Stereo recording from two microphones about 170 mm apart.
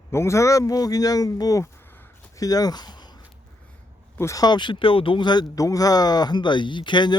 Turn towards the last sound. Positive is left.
turn(degrees=25)  # may be behind; listen again after turning